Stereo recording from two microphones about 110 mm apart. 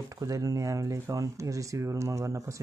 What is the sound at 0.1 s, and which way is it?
Speech, 30° right (ahead or behind).